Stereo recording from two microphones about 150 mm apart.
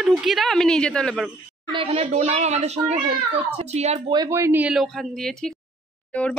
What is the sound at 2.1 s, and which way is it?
Speech, 50° right (ahead or behind).